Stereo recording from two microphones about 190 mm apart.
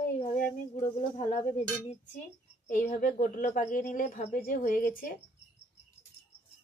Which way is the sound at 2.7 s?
40° left (ahead or behind).